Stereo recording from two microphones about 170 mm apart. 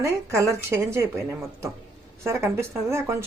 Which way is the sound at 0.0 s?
20° right (ahead or behind).